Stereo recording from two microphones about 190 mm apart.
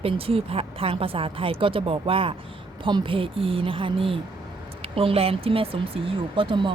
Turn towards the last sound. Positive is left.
turn(degrees=-25)  # may be behind; listen again after turning